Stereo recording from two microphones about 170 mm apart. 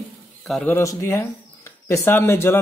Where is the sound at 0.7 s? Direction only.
15° left (ahead or behind).